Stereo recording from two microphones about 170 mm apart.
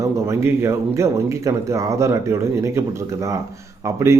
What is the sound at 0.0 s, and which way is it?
A man's voice, 15° right (ahead or behind).